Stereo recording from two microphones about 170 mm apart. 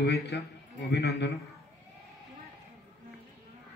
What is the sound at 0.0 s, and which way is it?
A woman's voice, 70° left (ahead or behind).